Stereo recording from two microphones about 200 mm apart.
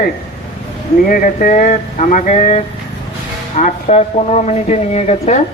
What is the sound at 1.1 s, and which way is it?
Speech, 45° left (ahead or behind).